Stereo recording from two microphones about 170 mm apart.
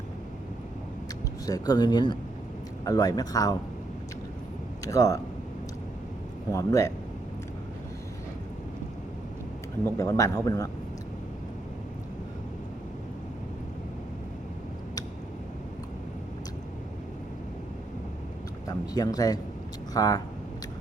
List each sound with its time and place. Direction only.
1.5 s a man's voice: 25° left (ahead or behind)
4.9 s a man's voice: 20° left (ahead or behind)
6.5 s a man's voice: 20° left (ahead or behind)
9.8 s a man's voice: 20° left (ahead or behind)
18.7 s a man's voice: 20° left (ahead or behind)